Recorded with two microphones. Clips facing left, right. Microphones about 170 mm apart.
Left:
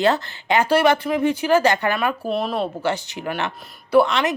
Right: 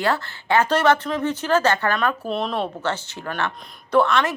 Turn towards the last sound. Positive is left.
turn(degrees=15)  # may be behind; listen again after turning